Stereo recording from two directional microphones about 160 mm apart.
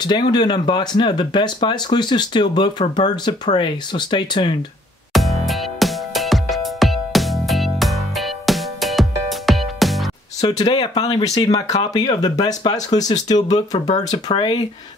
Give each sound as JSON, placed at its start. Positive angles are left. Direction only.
{"t": 0.0, "sound": "speech", "side_deg": 25}
{"t": 5.1, "sound": "music", "side_deg": 0}
{"t": 10.4, "sound": "speech", "side_deg": 25}